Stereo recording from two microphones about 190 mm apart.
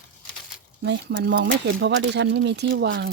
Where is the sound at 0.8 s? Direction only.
60° right (ahead or behind).